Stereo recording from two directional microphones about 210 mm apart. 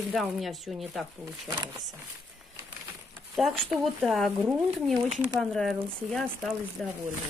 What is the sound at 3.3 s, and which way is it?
Speech, centre (ahead or behind).